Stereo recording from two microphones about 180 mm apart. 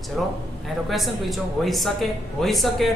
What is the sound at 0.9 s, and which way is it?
Speech, centre (ahead or behind).